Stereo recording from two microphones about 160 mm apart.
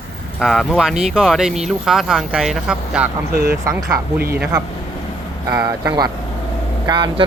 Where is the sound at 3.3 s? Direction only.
70° right (ahead or behind).